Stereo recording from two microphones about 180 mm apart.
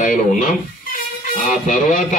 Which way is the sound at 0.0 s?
45° left (ahead or behind).